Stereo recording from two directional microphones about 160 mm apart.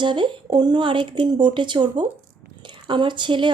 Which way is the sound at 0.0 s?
30° right (ahead or behind).